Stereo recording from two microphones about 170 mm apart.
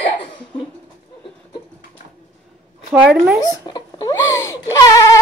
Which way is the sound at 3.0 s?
5° right (ahead or behind).